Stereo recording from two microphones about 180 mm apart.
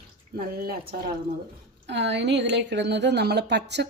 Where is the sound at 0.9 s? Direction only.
55° right (ahead or behind).